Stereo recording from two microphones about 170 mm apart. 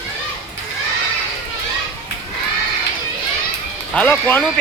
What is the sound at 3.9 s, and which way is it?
Speech, 10° left (ahead or behind).